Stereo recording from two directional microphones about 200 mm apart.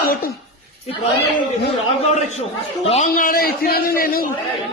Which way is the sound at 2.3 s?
30° left (ahead or behind).